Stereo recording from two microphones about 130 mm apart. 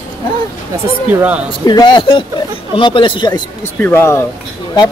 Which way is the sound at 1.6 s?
35° left (ahead or behind).